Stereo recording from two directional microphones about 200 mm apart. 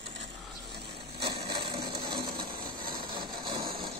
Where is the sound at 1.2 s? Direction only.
25° right (ahead or behind).